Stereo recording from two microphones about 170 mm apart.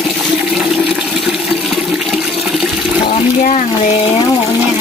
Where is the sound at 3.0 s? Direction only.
40° left (ahead or behind).